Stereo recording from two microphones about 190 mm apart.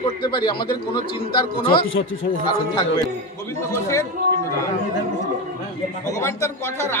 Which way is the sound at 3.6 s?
15° left (ahead or behind).